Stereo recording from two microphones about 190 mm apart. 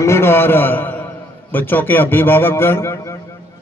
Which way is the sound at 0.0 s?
15° left (ahead or behind).